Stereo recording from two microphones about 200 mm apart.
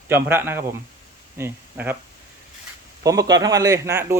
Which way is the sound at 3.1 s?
15° right (ahead or behind).